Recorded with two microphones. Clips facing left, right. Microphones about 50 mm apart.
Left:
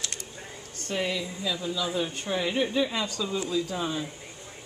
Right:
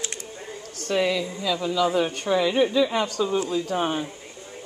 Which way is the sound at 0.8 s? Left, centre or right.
Right.